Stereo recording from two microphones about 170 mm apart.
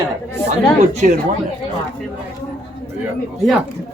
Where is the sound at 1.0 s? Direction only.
45° right (ahead or behind).